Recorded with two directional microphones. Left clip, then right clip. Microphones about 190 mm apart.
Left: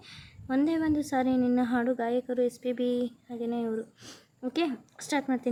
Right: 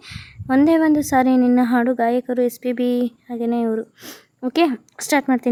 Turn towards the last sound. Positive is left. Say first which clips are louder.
# right 11 dB
turn(degrees=-45)  # may be behind; listen again after turning